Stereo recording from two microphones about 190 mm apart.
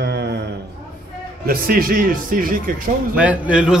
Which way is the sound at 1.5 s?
50° right (ahead or behind).